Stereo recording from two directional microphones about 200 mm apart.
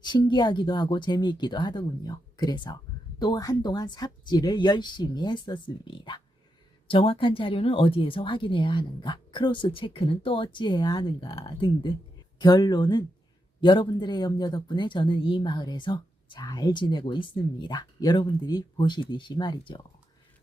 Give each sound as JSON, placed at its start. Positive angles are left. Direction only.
{"t": 0.0, "sound": "speech", "side_deg": 20}